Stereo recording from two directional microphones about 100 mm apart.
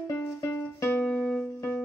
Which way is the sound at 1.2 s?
5° left (ahead or behind).